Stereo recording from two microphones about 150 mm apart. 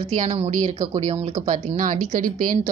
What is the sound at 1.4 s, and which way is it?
A woman's voice, 60° right (ahead or behind).